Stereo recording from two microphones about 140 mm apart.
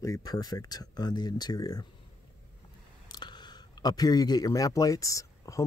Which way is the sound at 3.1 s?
30° left (ahead or behind).